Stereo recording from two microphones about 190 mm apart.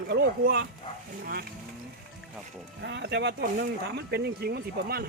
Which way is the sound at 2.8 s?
65° right (ahead or behind).